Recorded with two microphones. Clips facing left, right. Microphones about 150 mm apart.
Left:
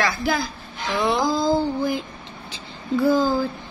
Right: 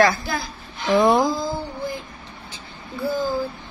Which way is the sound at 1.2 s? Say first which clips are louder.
Left 4 dB; 90° left.